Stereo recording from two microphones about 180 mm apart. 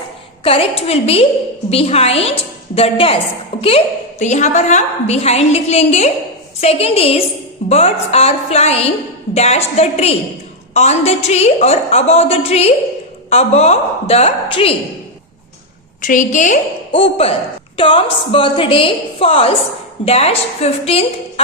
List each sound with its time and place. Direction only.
0.4 s a woman's voice: 30° left (ahead or behind)
16.0 s a woman's voice: 45° left (ahead or behind)
16.9 s a woman's voice: 30° left (ahead or behind)